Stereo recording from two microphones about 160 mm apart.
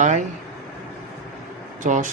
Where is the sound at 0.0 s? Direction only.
50° right (ahead or behind).